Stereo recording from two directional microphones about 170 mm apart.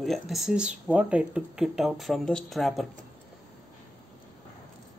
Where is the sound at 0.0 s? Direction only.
Centre (ahead or behind).